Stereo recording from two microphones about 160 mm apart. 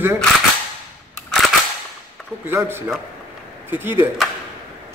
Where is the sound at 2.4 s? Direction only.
15° right (ahead or behind).